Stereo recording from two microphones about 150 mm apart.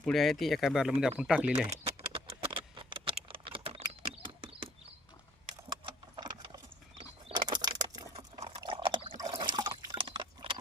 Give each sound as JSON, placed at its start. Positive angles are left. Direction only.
{"t": 0.0, "sound": "speech", "side_deg": 0}
{"t": 2.0, "sound": "typing", "side_deg": -35}
{"t": 5.6, "sound": "a sound", "side_deg": -30}
{"t": 8.4, "sound": "liquid", "side_deg": -35}